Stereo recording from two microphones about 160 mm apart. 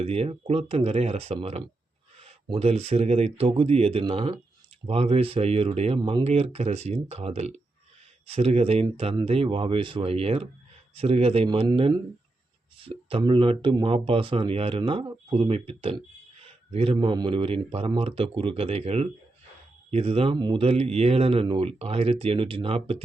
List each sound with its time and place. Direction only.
0.0 s speech: 40° right (ahead or behind)
6.0 s speech: 25° right (ahead or behind)
6.2 s speech: 40° right (ahead or behind)